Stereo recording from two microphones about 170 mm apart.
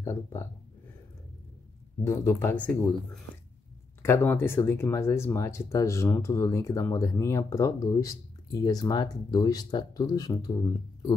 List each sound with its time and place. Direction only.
0.0 s speech: 15° left (ahead or behind)
2.0 s speech: 15° left (ahead or behind)
4.0 s speech: 15° left (ahead or behind)